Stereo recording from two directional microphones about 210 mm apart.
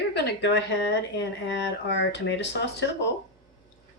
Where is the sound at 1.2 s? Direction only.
60° left (ahead or behind).